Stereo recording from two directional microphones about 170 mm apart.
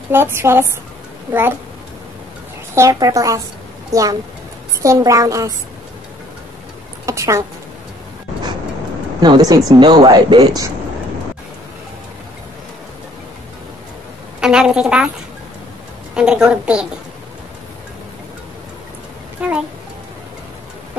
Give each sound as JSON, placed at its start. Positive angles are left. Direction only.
{"t": 0.1, "sound": "a woman's voice", "side_deg": -15}
{"t": 2.7, "sound": "speech", "side_deg": -20}
{"t": 7.1, "sound": "a woman's voice", "side_deg": -15}
{"t": 9.2, "sound": "speech", "side_deg": -20}
{"t": 14.4, "sound": "a woman's voice", "side_deg": -5}
{"t": 16.2, "sound": "a woman's voice", "side_deg": -5}
{"t": 19.4, "sound": "music", "side_deg": -5}